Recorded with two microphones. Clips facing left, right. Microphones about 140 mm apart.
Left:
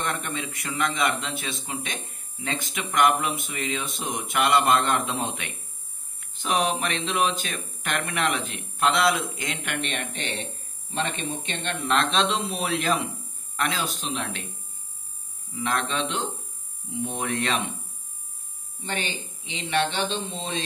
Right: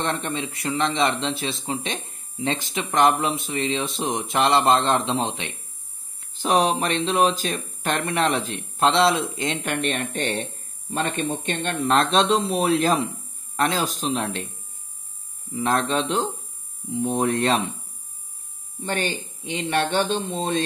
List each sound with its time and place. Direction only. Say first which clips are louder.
0.0 s speech: right 4 dB; 30° right (ahead or behind)
15.5 s speech: right 5 dB; 35° right (ahead or behind)
18.9 s speech: right 5 dB; 50° right (ahead or behind)